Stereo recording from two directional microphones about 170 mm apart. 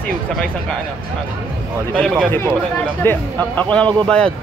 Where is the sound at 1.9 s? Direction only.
5° left (ahead or behind).